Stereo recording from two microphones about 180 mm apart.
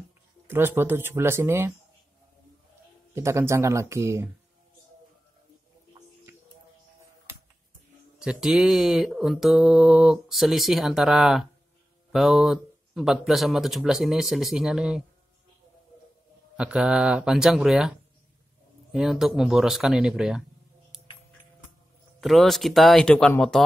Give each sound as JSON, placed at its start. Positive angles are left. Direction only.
{"t": 0.5, "sound": "speech", "side_deg": -10}
{"t": 3.2, "sound": "speech", "side_deg": -15}
{"t": 8.2, "sound": "mantra", "side_deg": -5}
{"t": 16.5, "sound": "mantra", "side_deg": -5}
{"t": 22.2, "sound": "mantra", "side_deg": 0}